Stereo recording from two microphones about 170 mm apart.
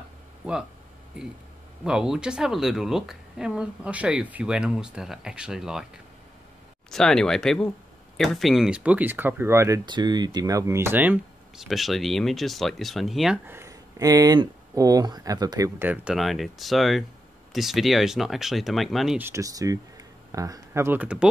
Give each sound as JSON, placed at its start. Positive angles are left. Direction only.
{"t": 1.9, "sound": "speech", "side_deg": -5}
{"t": 6.9, "sound": "speech", "side_deg": 5}
{"t": 9.8, "sound": "speech", "side_deg": -25}
{"t": 13.5, "sound": "speech", "side_deg": -15}
{"t": 19.2, "sound": "speech", "side_deg": -20}